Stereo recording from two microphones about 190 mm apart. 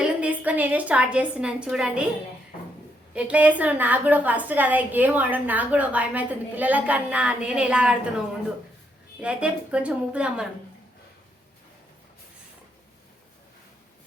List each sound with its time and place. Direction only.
0.0 s a woman's voice: 5° right (ahead or behind)
3.2 s a woman's voice: 5° right (ahead or behind)
9.2 s a woman's voice: 5° right (ahead or behind)